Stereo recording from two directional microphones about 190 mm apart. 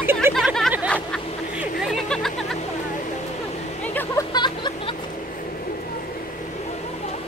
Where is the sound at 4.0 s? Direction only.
20° left (ahead or behind).